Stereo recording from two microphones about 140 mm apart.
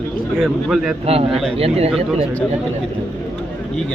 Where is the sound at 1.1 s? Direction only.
45° right (ahead or behind).